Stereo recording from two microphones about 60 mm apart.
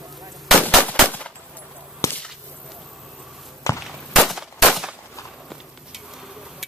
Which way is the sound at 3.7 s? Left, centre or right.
Left.